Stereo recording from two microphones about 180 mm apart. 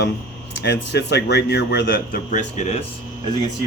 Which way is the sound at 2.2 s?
40° left (ahead or behind).